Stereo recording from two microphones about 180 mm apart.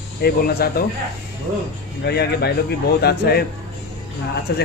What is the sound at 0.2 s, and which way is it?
Speech, 60° left (ahead or behind).